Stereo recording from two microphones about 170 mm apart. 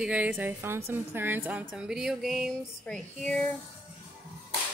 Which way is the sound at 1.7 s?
5° right (ahead or behind).